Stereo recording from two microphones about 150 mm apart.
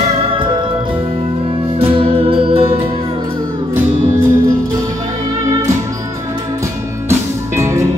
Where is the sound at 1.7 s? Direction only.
40° right (ahead or behind).